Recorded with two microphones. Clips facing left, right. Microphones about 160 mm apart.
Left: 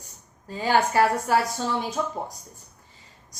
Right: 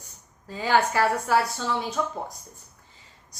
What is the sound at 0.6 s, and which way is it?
Speech, 40° left (ahead or behind).